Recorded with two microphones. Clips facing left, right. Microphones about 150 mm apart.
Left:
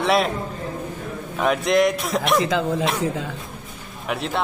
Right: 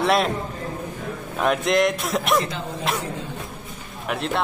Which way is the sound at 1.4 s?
Centre (ahead or behind).